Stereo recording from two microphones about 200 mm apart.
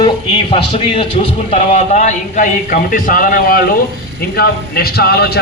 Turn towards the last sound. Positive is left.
turn(degrees=55)  # may be behind; listen again after turning